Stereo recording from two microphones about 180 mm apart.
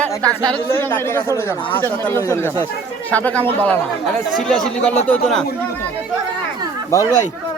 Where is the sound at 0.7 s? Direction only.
10° left (ahead or behind).